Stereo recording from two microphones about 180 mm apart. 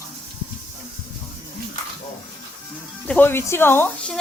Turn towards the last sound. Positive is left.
turn(degrees=10)  # may be behind; listen again after turning